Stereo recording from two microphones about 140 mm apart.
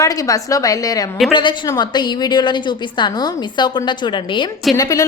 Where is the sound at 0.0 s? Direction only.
25° left (ahead or behind).